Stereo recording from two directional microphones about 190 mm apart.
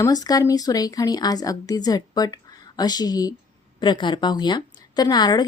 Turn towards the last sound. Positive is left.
turn(degrees=20)  # may be behind; listen again after turning